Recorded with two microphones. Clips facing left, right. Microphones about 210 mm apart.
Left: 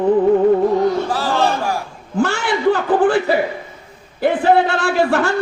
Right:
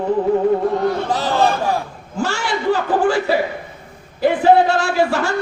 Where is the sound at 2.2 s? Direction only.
55° left (ahead or behind).